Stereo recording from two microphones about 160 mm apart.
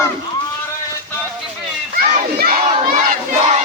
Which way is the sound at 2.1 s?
65° right (ahead or behind).